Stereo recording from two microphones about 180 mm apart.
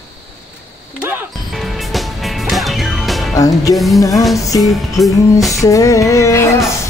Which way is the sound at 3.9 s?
20° left (ahead or behind).